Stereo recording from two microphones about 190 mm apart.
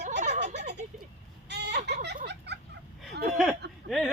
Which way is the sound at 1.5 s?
60° right (ahead or behind).